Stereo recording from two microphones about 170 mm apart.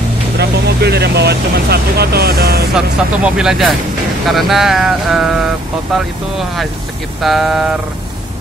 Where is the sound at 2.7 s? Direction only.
5° right (ahead or behind).